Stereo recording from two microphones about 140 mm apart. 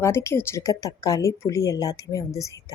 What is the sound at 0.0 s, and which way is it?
A woman's voice, 20° left (ahead or behind).